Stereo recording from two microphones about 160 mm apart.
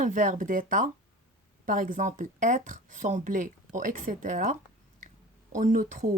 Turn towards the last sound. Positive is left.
turn(degrees=-50)  # may be behind; listen again after turning